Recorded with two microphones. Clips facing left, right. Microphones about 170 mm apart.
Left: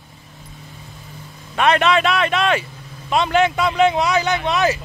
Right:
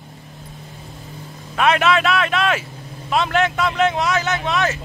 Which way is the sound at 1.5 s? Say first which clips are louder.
Left 1 dB; 5° right (ahead or behind).